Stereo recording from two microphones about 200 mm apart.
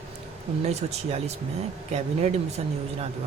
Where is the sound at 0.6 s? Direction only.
35° right (ahead or behind).